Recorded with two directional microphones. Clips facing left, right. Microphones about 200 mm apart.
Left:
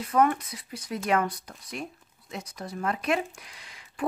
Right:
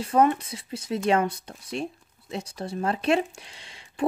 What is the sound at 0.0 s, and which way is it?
Speech, 25° right (ahead or behind).